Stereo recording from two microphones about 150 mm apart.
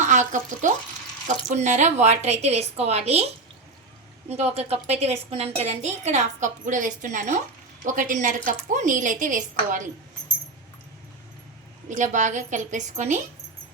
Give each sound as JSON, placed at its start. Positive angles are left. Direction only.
{"t": 0.0, "sound": "a woman's voice", "side_deg": -55}
{"t": 4.3, "sound": "a woman's voice", "side_deg": -45}
{"t": 11.9, "sound": "a woman's voice", "side_deg": -55}